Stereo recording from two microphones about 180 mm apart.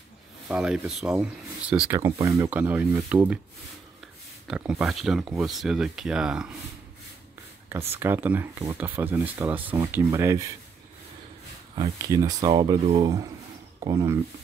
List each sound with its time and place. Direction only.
0.5 s speech: 5° right (ahead or behind)
2.0 s speech: 20° right (ahead or behind)
4.5 s speech: 5° right (ahead or behind)
7.9 s speech: 10° right (ahead or behind)
11.7 s speech: 20° right (ahead or behind)
12.8 s speech: 35° right (ahead or behind)
13.8 s speech: 15° right (ahead or behind)